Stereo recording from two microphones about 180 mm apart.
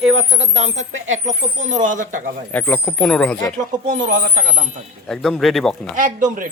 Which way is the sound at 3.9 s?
45° right (ahead or behind).